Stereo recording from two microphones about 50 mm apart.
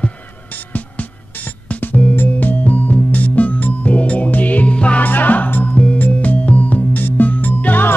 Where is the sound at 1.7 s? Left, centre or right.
Left.